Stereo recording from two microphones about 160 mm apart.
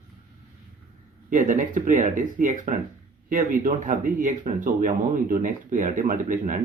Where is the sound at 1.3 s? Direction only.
55° right (ahead or behind).